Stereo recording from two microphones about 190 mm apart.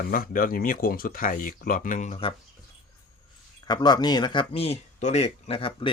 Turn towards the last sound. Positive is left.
turn(degrees=30)  # may be behind; listen again after turning